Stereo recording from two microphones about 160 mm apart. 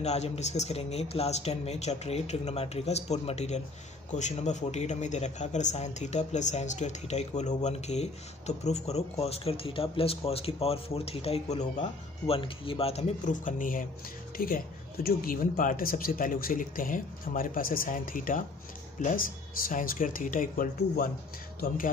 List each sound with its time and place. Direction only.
0.0 s speech: 45° left (ahead or behind)
12.4 s speech: 35° left (ahead or behind); by 21.1 s 60° left (ahead or behind)